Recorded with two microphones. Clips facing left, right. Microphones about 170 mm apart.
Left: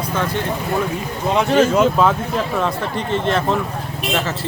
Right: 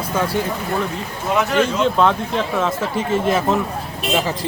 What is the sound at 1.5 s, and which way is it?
Speech, 40° left (ahead or behind).